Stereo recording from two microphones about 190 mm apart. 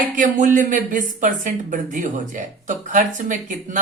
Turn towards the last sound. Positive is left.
turn(degrees=-40)  # may be behind; listen again after turning